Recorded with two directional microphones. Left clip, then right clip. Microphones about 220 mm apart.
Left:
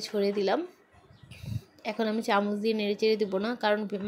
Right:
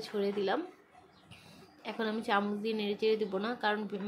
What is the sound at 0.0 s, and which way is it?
Speech, 25° left (ahead or behind).